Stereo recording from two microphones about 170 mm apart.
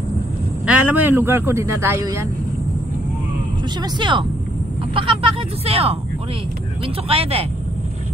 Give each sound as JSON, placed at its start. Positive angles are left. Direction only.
{"t": 0.7, "sound": "speech", "side_deg": -10}
{"t": 4.0, "sound": "speech", "side_deg": -30}
{"t": 7.1, "sound": "speech", "side_deg": -35}